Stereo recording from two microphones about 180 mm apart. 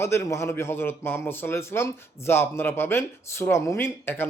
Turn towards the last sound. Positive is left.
turn(degrees=15)  # may be behind; listen again after turning